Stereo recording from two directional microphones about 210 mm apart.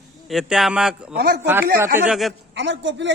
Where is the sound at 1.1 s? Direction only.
50° right (ahead or behind).